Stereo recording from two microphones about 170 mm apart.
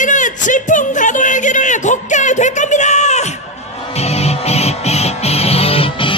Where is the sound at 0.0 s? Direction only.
50° left (ahead or behind).